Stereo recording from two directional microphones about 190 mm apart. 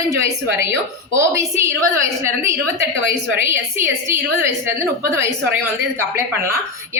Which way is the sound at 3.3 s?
10° right (ahead or behind).